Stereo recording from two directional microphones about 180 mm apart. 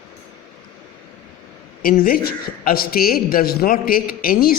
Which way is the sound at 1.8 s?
55° left (ahead or behind).